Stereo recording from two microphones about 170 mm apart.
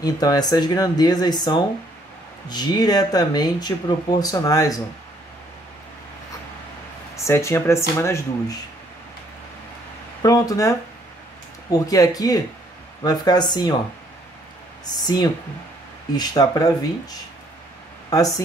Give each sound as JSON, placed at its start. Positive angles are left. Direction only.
{"t": 0.0, "sound": "speech", "side_deg": 20}
{"t": 7.2, "sound": "speech", "side_deg": 15}
{"t": 10.2, "sound": "speech", "side_deg": 20}
{"t": 14.9, "sound": "speech", "side_deg": 25}